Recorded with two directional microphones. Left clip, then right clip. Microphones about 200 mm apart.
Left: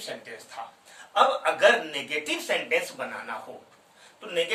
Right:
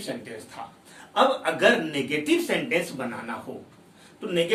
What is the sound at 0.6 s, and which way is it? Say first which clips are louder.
Speech: even; 10° left (ahead or behind).